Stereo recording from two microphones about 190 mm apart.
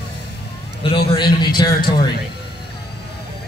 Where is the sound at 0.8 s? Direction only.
30° left (ahead or behind).